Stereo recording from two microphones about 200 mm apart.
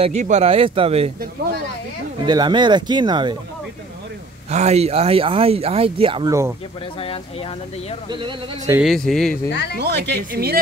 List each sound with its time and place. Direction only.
0.0 s speech: 35° right (ahead or behind)
1.2 s speech: 50° right (ahead or behind)
2.2 s speech: 20° right (ahead or behind)
4.5 s speech: 35° right (ahead or behind)
8.1 s speech: 25° right (ahead or behind)
8.8 s speech: centre (ahead or behind)
9.5 s speech: 55° left (ahead or behind)
9.8 s speech: 55° right (ahead or behind)